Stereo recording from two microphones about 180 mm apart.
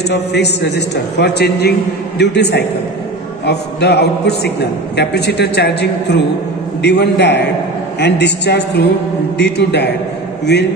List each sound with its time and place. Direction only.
0.1 s a man's voice: 70° left (ahead or behind)